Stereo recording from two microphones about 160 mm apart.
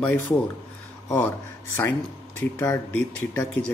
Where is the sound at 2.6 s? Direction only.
20° left (ahead or behind).